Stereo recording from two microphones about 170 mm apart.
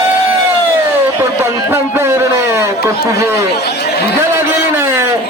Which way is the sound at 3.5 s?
80° left.